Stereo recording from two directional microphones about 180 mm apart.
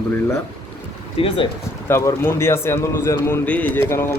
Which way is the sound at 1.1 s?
30° left (ahead or behind).